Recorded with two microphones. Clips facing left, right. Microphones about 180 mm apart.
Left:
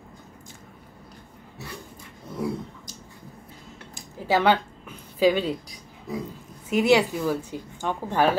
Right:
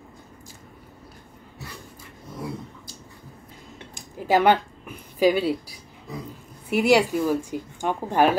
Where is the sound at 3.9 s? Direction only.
15° right (ahead or behind).